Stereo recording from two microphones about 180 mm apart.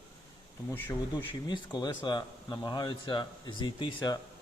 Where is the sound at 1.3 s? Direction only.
25° left (ahead or behind).